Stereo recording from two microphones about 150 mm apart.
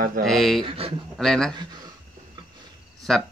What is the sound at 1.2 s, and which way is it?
Speech, 5° left (ahead or behind).